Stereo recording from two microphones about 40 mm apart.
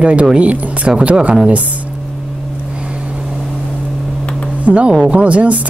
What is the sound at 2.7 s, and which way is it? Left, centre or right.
Vehicle, right.